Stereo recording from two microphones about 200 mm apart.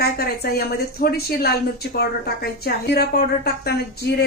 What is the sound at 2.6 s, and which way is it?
A woman's voice, 50° left (ahead or behind).